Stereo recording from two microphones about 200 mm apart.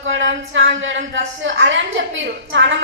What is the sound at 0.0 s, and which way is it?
A woman's voice, 70° right (ahead or behind).